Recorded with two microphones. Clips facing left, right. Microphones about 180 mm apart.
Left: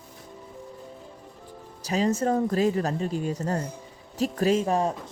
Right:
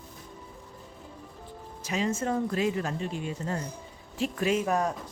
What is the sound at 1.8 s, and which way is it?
Speech, 35° left (ahead or behind).